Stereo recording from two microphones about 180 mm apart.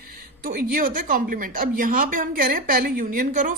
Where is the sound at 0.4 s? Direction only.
55° right (ahead or behind).